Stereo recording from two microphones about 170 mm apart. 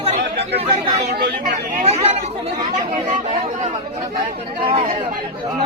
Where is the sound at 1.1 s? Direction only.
50° right (ahead or behind).